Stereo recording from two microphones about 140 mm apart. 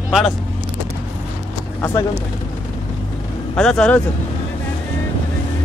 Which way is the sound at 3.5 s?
5° left (ahead or behind).